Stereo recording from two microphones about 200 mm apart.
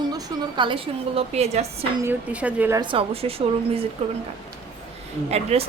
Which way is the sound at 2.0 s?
10° right (ahead or behind).